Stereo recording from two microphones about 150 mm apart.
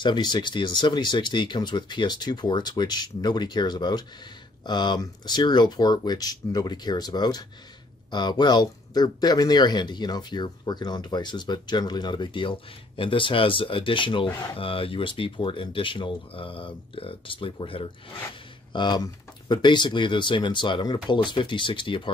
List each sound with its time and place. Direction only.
0.0 s speech: 30° left (ahead or behind)